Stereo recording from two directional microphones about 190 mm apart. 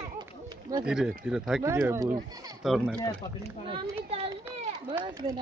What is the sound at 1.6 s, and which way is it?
Speech, 15° right (ahead or behind).